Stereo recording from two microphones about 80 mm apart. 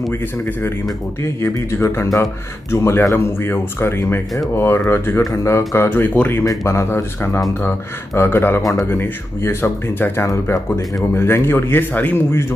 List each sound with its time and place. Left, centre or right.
1.4 s a man's voice: left
6.4 s speech: left
8.1 s a man's voice: left
10.2 s a man's voice: left